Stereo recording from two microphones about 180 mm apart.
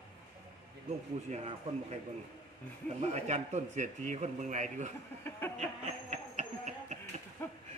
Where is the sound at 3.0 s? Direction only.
40° right (ahead or behind).